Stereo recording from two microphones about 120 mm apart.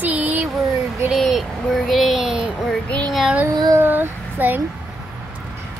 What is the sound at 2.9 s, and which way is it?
Child singing, 10° left (ahead or behind).